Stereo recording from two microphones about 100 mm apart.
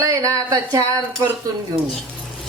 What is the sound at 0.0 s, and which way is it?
Speech, 30° right (ahead or behind).